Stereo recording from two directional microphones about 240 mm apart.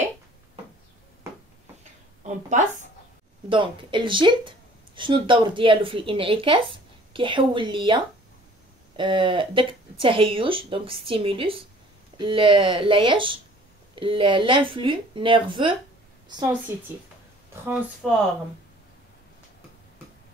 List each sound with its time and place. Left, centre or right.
2.2 s a woman's voice: right
18.0 s speech: centre